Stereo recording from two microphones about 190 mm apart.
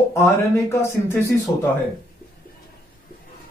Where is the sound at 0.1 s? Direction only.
15° left (ahead or behind).